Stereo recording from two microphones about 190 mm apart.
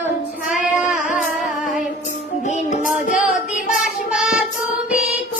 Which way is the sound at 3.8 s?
5° right (ahead or behind).